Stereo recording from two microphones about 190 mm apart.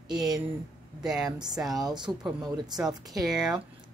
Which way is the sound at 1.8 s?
20° right (ahead or behind).